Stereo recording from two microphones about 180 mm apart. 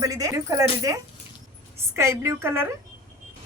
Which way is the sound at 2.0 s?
15° right (ahead or behind).